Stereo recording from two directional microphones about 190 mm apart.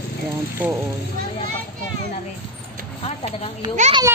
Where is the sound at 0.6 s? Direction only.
10° right (ahead or behind).